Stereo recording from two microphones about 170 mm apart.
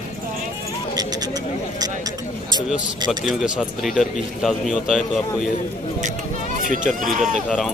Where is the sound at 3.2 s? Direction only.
Centre (ahead or behind).